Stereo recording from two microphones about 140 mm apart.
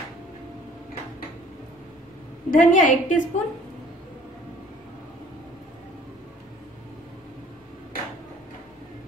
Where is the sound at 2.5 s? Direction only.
70° left (ahead or behind).